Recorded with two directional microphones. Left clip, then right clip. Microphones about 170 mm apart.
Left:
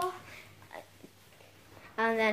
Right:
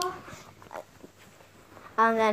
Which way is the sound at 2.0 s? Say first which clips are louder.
Right 6 dB; 10° right (ahead or behind).